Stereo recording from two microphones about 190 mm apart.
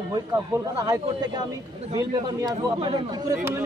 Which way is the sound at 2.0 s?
25° right (ahead or behind).